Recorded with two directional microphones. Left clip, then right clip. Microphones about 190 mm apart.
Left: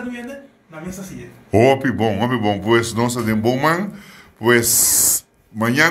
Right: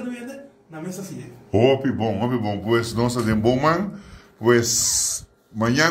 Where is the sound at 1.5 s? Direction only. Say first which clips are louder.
Left 4 dB; 35° left (ahead or behind).